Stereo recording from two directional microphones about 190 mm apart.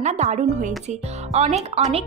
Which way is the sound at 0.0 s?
35° right (ahead or behind).